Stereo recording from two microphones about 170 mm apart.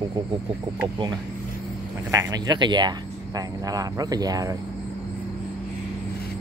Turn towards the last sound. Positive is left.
turn(degrees=-20)  # may be behind; listen again after turning